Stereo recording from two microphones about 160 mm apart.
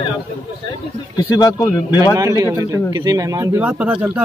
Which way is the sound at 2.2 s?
20° right (ahead or behind).